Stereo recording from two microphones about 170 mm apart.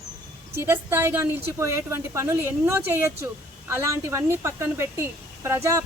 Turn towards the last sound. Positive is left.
turn(degrees=-15)  # may be behind; listen again after turning